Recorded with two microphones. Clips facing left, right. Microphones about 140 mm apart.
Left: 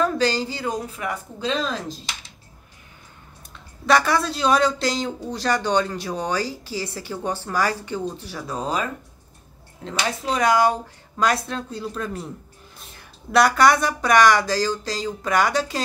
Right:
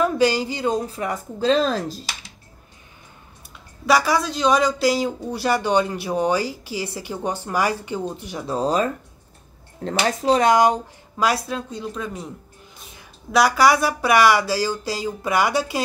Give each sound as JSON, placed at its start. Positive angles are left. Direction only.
{"t": 0.0, "sound": "speech", "side_deg": -15}
{"t": 3.8, "sound": "speech", "side_deg": -5}
{"t": 8.5, "sound": "speech", "side_deg": -35}
{"t": 11.1, "sound": "speech", "side_deg": -5}